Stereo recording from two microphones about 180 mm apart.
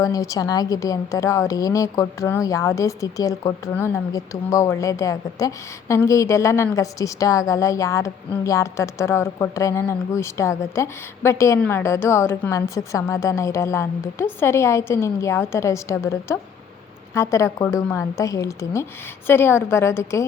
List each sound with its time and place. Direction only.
0.0 s a woman's voice: 20° left (ahead or behind)